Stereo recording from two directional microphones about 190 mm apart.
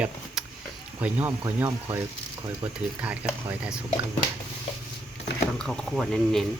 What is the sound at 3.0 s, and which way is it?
Speech, 5° right (ahead or behind).